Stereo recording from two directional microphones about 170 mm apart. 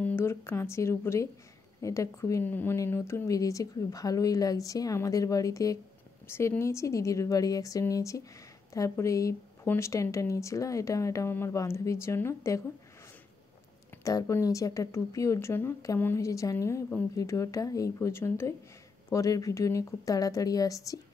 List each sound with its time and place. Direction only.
0.0 s a woman's voice: 15° left (ahead or behind)
14.0 s speech: 20° left (ahead or behind)